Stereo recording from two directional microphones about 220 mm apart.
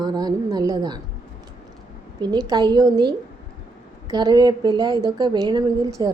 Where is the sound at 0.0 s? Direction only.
20° right (ahead or behind).